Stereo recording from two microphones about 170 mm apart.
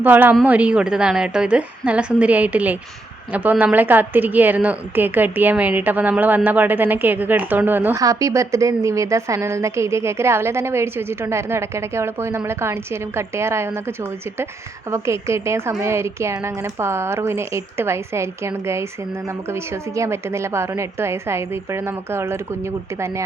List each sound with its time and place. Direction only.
0.0 s a woman's voice: 10° right (ahead or behind)